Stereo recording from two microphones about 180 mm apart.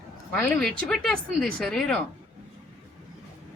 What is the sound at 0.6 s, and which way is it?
Speech, centre (ahead or behind).